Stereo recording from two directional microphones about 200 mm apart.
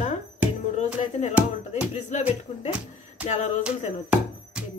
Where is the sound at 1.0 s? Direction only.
35° left (ahead or behind).